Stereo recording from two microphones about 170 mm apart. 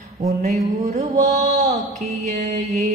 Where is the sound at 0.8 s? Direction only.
40° right (ahead or behind).